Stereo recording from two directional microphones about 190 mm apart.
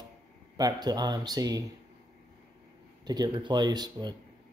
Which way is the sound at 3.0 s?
20° right (ahead or behind).